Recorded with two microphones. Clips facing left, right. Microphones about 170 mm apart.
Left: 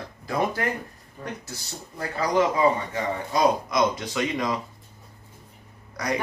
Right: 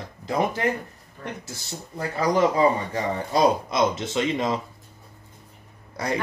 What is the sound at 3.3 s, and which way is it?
Speech, 25° right (ahead or behind).